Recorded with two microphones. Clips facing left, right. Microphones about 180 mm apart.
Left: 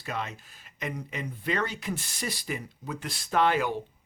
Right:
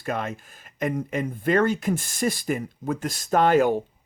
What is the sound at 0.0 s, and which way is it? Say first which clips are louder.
Speech: right 6 dB; 50° right (ahead or behind).